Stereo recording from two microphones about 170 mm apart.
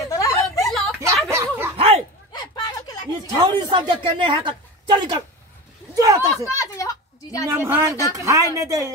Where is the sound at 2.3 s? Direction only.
25° left (ahead or behind).